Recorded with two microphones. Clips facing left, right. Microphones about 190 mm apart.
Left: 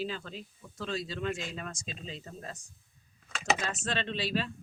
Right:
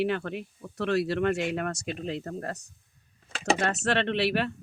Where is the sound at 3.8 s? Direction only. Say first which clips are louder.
Right 8 dB; 70° right (ahead or behind).